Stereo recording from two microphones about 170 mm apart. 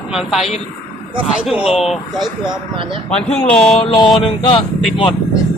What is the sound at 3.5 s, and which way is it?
Speech, 5° left (ahead or behind).